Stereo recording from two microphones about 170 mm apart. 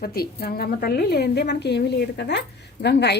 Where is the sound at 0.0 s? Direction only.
65° left (ahead or behind).